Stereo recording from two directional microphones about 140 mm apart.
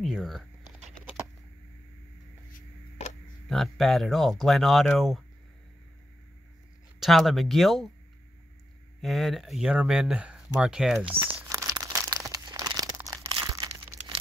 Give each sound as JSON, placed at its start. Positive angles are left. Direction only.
{"t": 0.0, "sound": "a sound", "side_deg": 0}
{"t": 3.0, "sound": "a sound", "side_deg": 50}
{"t": 3.4, "sound": "speech", "side_deg": 0}
{"t": 7.0, "sound": "speech", "side_deg": 0}
{"t": 9.0, "sound": "speech", "side_deg": 0}
{"t": 11.1, "sound": "speech", "side_deg": -40}
{"t": 11.4, "sound": "crumpling", "side_deg": -25}